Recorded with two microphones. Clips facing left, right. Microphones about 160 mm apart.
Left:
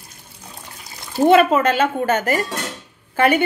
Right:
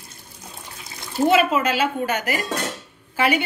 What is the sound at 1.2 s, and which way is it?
Speech, 50° left (ahead or behind).